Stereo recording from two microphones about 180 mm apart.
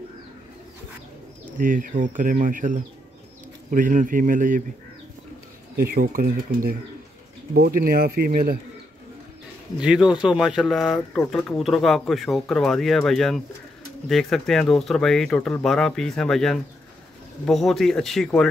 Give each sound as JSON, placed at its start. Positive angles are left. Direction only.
{"t": 1.6, "sound": "speech", "side_deg": -50}
{"t": 5.9, "sound": "speech", "side_deg": -55}
{"t": 9.8, "sound": "speech", "side_deg": -5}